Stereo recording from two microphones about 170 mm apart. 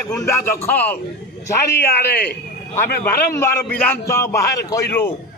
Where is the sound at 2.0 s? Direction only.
65° left (ahead or behind).